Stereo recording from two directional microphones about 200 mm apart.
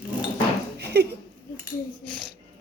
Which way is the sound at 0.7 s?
55° right (ahead or behind).